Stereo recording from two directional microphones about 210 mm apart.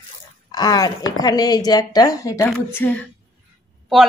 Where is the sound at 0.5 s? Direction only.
20° left (ahead or behind).